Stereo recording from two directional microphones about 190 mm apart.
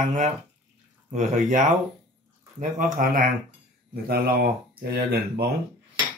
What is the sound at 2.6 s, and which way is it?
Speech, 45° right (ahead or behind).